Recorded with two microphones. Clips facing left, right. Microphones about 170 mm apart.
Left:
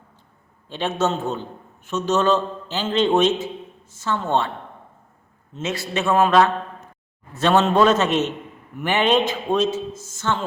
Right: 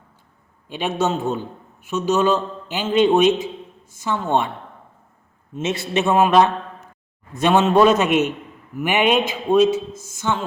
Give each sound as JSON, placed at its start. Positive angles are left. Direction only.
{"t": 0.7, "sound": "a man's voice", "side_deg": -10}
{"t": 5.5, "sound": "a man's voice", "side_deg": -20}